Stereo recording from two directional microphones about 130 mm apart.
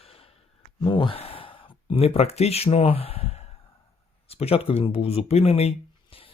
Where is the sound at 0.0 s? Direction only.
45° left (ahead or behind).